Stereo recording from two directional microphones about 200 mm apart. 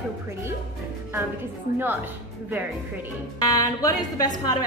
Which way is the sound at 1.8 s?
10° right (ahead or behind).